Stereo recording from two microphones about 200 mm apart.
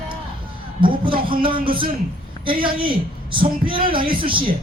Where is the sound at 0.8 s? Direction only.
25° right (ahead or behind).